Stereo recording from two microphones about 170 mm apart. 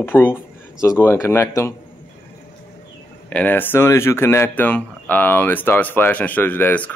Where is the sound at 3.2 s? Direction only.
10° left (ahead or behind).